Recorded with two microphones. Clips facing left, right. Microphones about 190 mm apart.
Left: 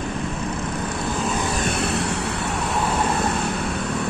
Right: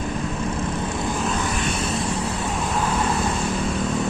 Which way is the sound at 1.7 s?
65° left (ahead or behind).